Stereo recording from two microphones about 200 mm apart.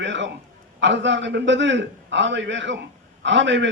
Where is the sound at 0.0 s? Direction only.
65° right (ahead or behind).